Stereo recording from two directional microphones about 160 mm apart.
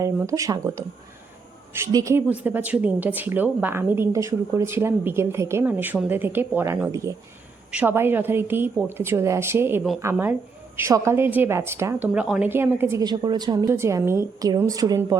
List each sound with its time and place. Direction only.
0.0 s a woman's voice: 20° right (ahead or behind)
13.1 s a woman's voice: 25° right (ahead or behind)